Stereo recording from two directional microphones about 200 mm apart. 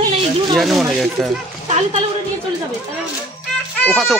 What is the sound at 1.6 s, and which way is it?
Speech, 35° right (ahead or behind).